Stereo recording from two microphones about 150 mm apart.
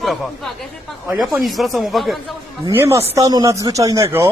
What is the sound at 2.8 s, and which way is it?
Speech, 20° right (ahead or behind).